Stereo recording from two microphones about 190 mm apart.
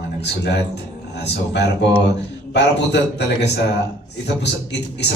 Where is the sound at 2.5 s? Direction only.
65° left (ahead or behind).